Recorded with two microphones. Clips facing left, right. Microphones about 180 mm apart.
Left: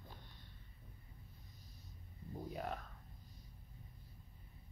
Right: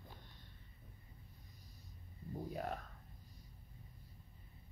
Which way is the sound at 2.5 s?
40° right (ahead or behind).